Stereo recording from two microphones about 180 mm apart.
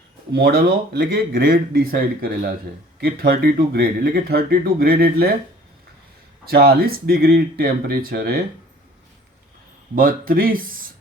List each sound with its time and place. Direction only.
0.3 s speech: 55° right (ahead or behind)
6.4 s speech: 55° right (ahead or behind)
9.9 s speech: 50° right (ahead or behind)